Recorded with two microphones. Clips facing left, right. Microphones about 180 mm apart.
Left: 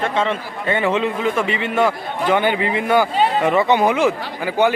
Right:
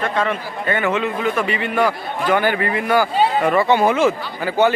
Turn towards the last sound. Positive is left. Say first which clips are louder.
# right 1 dB
turn(degrees=15)  # may be behind; listen again after turning